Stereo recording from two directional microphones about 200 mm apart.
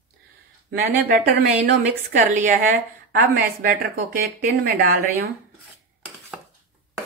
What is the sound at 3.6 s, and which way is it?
Speech, 45° right (ahead or behind).